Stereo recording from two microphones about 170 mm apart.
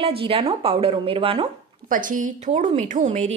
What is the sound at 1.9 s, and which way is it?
A woman's voice, 50° right (ahead or behind).